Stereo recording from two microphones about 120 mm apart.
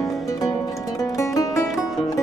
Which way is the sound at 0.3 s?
30° left (ahead or behind).